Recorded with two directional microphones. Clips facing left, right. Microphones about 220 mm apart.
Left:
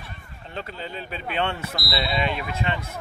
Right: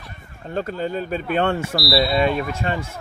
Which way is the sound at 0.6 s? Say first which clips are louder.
Right 10 dB; 45° right (ahead or behind).